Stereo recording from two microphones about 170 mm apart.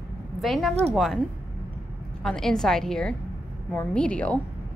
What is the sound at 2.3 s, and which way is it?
A woman's voice, centre (ahead or behind).